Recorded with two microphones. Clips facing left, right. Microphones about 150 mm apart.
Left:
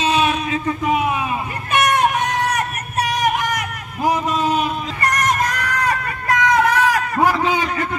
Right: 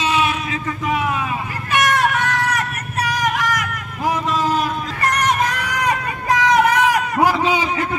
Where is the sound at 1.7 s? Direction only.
20° left (ahead or behind).